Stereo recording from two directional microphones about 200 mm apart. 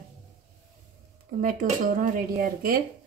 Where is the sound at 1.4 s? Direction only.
45° right (ahead or behind).